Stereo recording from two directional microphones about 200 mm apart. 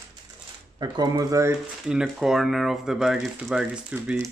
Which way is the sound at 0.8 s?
20° right (ahead or behind).